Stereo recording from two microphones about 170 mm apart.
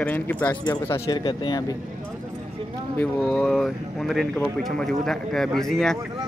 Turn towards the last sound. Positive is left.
turn(degrees=0)  # may be behind; listen again after turning